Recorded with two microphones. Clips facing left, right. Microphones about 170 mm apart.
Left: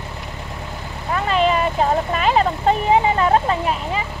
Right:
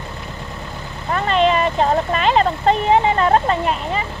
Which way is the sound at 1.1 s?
5° left (ahead or behind).